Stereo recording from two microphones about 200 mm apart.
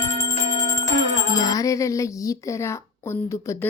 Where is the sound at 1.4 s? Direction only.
15° left (ahead or behind).